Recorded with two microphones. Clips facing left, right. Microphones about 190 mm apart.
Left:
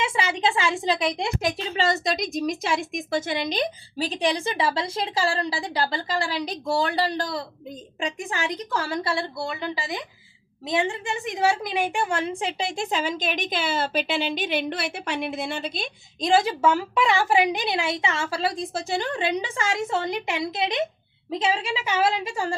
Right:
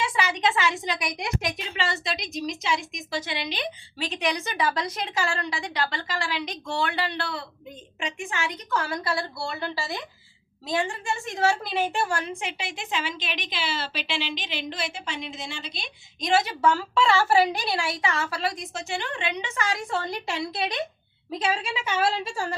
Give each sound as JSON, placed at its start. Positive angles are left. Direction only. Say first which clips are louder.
{"t": 0.0, "sound": "a woman's voice", "louder": "left 1 dB", "side_deg": 25}
{"t": 1.7, "sound": "a woman's voice", "louder": "left 6 dB", "side_deg": 40}
{"t": 16.2, "sound": "a woman's voice", "louder": "left 2 dB", "side_deg": 30}